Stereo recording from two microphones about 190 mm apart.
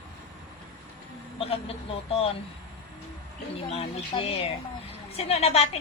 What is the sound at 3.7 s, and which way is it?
A woman's voice, 30° left (ahead or behind).